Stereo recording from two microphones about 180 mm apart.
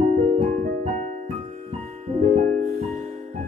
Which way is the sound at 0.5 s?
45° right (ahead or behind).